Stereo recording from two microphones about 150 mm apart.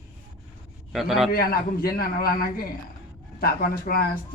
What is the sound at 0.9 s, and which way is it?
Speech, centre (ahead or behind).